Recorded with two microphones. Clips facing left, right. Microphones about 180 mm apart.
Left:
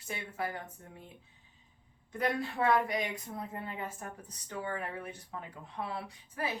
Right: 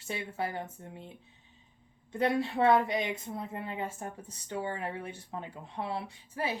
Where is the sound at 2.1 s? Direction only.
25° right (ahead or behind).